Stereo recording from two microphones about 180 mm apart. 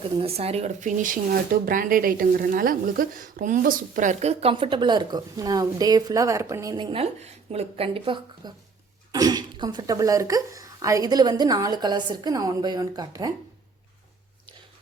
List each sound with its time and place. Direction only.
0.2 s speech: 35° right (ahead or behind)